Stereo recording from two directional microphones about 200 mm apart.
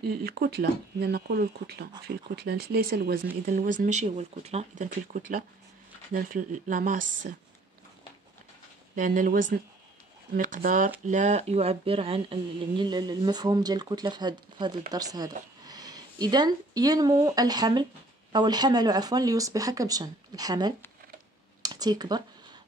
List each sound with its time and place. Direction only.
0.0 s speech: 50° right (ahead or behind)
8.9 s speech: 40° right (ahead or behind); by 20.7 s 20° right (ahead or behind)
21.6 s a sound: 20° right (ahead or behind)